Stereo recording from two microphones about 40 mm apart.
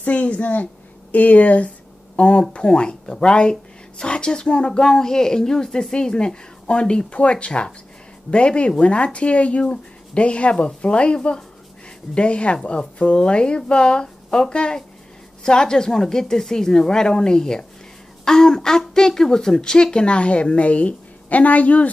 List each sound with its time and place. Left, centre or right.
0.0 s a woman's voice: left